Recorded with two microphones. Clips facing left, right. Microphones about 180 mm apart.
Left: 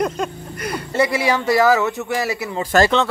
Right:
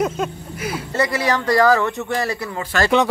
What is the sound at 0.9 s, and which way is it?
Speech, 10° left (ahead or behind).